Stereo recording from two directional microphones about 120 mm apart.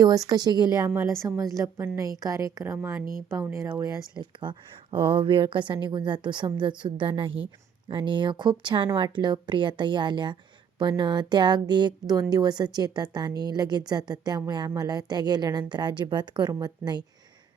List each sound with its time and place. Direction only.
0.0 s a woman's voice: 30° right (ahead or behind)
4.4 s a woman's voice: 45° right (ahead or behind)